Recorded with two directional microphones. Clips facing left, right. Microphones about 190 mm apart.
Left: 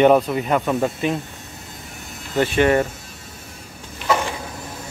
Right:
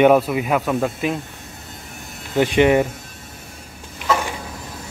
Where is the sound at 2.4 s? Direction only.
15° right (ahead or behind).